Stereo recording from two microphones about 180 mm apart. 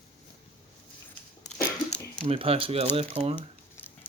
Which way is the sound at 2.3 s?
30° right (ahead or behind).